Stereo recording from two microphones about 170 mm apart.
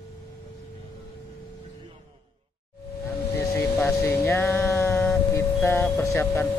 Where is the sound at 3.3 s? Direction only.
15° left (ahead or behind).